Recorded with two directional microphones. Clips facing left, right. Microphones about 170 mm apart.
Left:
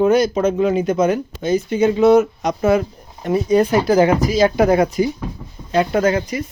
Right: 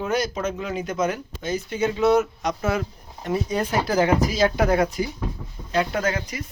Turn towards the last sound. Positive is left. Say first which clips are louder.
# left 8 dB
turn(degrees=25)  # may be behind; listen again after turning